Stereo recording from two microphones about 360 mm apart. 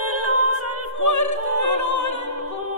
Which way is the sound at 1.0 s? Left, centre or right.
Left.